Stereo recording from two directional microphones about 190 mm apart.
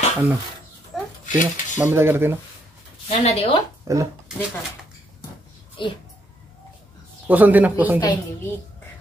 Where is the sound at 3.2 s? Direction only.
30° left (ahead or behind).